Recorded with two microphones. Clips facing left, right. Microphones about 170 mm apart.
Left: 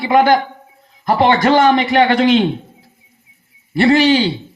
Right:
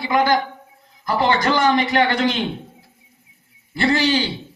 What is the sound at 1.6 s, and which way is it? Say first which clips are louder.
Speech: left 5 dB; 20° left (ahead or behind).